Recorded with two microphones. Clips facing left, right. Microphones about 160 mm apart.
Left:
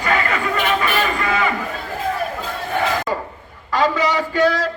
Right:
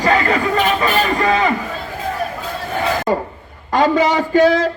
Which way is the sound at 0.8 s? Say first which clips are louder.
Right 4 dB; 35° right (ahead or behind).